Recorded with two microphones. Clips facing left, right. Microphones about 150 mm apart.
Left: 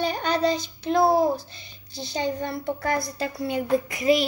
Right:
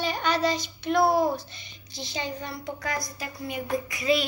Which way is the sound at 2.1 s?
50° left (ahead or behind).